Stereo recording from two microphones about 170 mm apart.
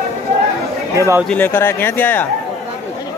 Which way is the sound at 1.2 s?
10° left (ahead or behind).